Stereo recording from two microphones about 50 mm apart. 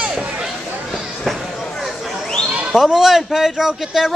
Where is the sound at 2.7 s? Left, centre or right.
Centre.